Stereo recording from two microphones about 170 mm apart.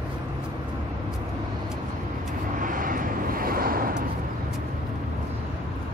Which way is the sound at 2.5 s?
55° right (ahead or behind).